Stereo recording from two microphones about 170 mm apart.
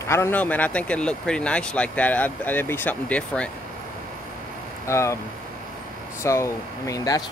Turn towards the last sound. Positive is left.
turn(degrees=20)  # may be behind; listen again after turning